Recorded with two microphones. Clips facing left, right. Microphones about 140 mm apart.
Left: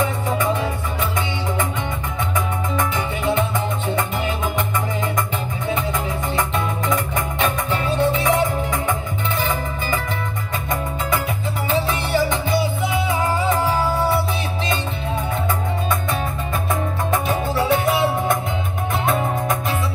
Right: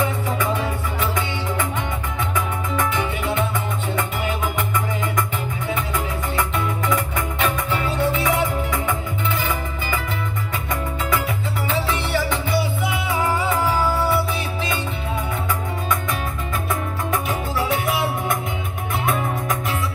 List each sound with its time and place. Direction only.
2.7 s music: 25° left (ahead or behind)
6.3 s music: 25° left (ahead or behind)
11.9 s music: 20° left (ahead or behind)
17.1 s music: 25° left (ahead or behind)